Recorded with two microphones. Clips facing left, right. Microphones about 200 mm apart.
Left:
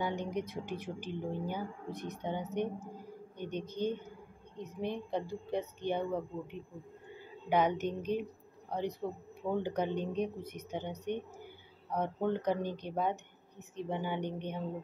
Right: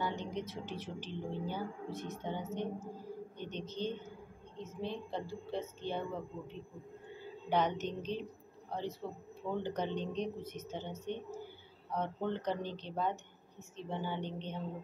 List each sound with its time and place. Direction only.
0.0 s speech: 15° left (ahead or behind)